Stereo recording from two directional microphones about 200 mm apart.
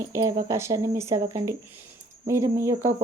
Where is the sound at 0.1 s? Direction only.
15° right (ahead or behind).